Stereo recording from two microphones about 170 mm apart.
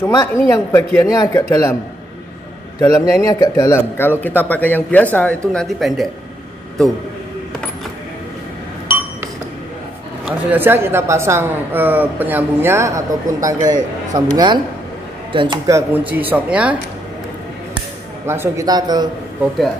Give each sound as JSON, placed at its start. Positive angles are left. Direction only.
{"t": 0.0, "sound": "speech", "side_deg": 20}
{"t": 2.8, "sound": "speech", "side_deg": 20}
{"t": 10.2, "sound": "a man's voice", "side_deg": -10}
{"t": 18.2, "sound": "a man's voice", "side_deg": -15}